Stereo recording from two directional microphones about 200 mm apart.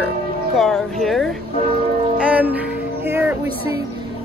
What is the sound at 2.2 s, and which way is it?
Music, 5° right (ahead or behind).